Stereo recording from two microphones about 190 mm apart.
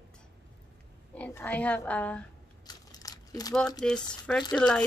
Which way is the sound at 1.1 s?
10° left (ahead or behind).